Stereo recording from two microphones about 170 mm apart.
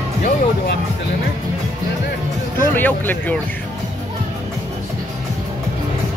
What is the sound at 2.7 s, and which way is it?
Speech, 10° left (ahead or behind).